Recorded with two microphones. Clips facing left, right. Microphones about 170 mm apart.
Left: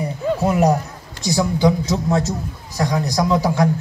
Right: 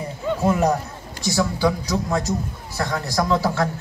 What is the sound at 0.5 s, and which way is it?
A man's voice, 15° left (ahead or behind).